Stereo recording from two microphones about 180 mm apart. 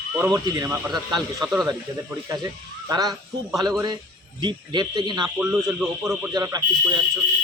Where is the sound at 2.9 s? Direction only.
20° right (ahead or behind).